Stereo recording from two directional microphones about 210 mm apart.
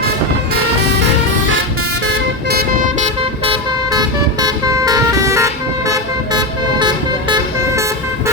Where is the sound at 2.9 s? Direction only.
30° right (ahead or behind).